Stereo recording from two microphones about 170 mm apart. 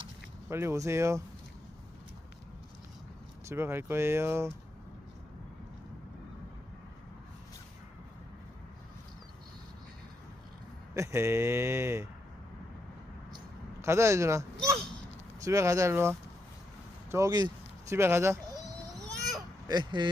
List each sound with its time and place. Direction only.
0.5 s speech: 15° right (ahead or behind)
3.5 s speech: 15° right (ahead or behind)
10.9 s speech: 15° right (ahead or behind)
13.8 s speech: 15° right (ahead or behind)
15.4 s speech: 20° right (ahead or behind)
19.6 s speech: 25° right (ahead or behind)